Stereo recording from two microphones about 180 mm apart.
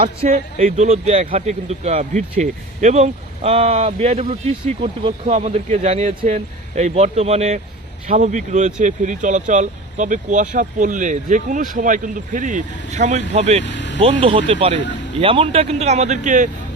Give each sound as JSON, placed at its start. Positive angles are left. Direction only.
{"t": 0.0, "sound": "speech", "side_deg": -35}
{"t": 13.7, "sound": "vehicle", "side_deg": 80}
{"t": 14.0, "sound": "speech", "side_deg": -35}